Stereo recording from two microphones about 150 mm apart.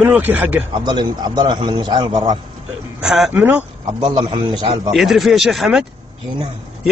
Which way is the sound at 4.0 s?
30° right (ahead or behind).